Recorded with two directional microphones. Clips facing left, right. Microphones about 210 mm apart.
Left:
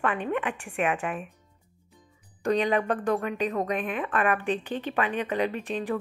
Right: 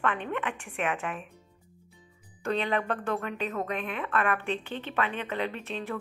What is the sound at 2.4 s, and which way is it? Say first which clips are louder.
Speech: left 4 dB; 15° left (ahead or behind).